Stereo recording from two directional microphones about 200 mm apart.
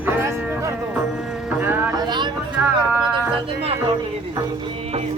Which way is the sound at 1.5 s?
10° right (ahead or behind).